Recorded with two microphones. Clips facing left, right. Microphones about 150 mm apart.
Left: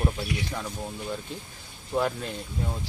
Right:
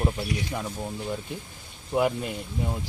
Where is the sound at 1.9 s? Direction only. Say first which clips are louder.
Right 3 dB; 10° right (ahead or behind).